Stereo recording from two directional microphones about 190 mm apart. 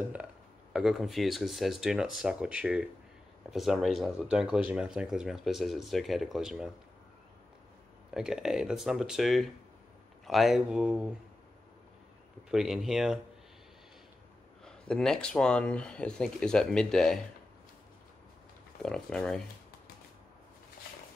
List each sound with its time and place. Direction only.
0.7 s speech: 5° right (ahead or behind)
8.1 s speech: 5° right (ahead or behind)
12.4 s speech: centre (ahead or behind)
14.6 s speech: 5° left (ahead or behind)
18.8 s speech: 5° left (ahead or behind)